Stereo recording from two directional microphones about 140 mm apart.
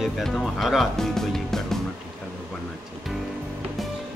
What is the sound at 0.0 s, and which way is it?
Speech, centre (ahead or behind).